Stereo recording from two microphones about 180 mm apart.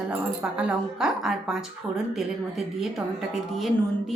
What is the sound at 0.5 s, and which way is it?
Speech, 5° right (ahead or behind).